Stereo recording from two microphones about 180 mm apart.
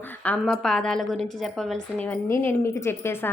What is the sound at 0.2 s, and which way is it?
A woman's voice, 5° left (ahead or behind).